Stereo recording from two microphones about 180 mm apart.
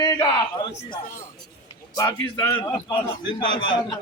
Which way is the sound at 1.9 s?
15° left (ahead or behind).